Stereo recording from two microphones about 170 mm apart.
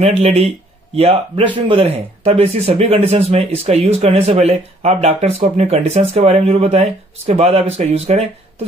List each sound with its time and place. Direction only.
0.2 s speech: 40° right (ahead or behind)